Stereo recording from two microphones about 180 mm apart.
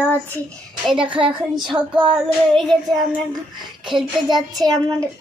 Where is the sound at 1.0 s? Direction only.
30° right (ahead or behind).